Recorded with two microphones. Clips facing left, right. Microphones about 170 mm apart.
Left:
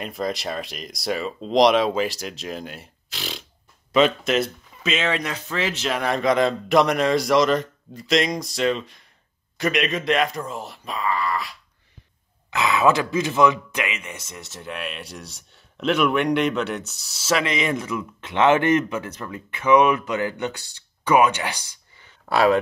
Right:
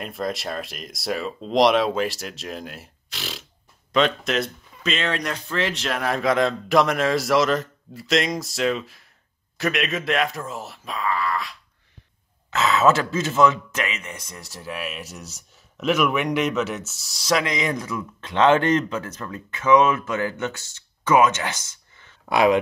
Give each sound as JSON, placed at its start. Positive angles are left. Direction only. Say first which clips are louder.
{"t": 0.0, "sound": "speech", "louder": "left 1 dB", "side_deg": 0}
{"t": 12.4, "sound": "speech", "louder": "right 1 dB", "side_deg": 15}
{"t": 17.5, "sound": "speech", "louder": "left 1 dB", "side_deg": 25}
{"t": 17.9, "sound": "speech", "louder": "even", "side_deg": 10}
{"t": 22.3, "sound": "speech", "louder": "even", "side_deg": -15}